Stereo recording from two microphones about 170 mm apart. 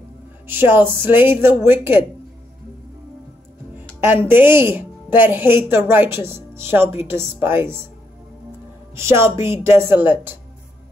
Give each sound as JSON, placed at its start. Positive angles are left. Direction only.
{"t": 0.5, "sound": "a woman's voice", "side_deg": -15}
{"t": 4.0, "sound": "a woman's voice", "side_deg": -15}
{"t": 8.9, "sound": "a woman's voice", "side_deg": -15}